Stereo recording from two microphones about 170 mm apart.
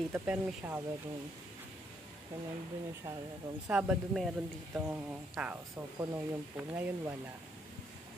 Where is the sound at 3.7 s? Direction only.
5° right (ahead or behind).